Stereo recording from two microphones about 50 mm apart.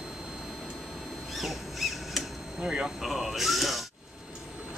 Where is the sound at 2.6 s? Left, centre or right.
Centre.